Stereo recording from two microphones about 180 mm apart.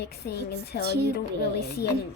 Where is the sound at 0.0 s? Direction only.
65° left (ahead or behind).